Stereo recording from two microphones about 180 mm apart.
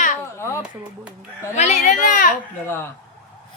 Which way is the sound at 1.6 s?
40° left (ahead or behind).